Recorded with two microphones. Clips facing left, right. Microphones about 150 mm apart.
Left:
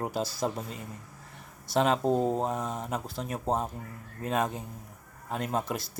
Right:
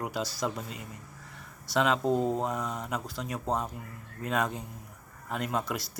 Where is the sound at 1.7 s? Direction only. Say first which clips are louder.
Left 1 dB; 35° left (ahead or behind).